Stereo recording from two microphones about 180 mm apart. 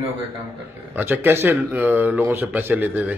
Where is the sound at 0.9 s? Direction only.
10° right (ahead or behind).